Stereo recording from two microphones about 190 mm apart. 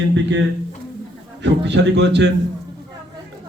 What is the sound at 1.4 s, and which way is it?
Speech, 65° right (ahead or behind).